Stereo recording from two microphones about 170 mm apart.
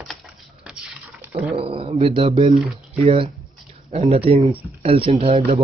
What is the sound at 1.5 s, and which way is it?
Speech, 35° right (ahead or behind).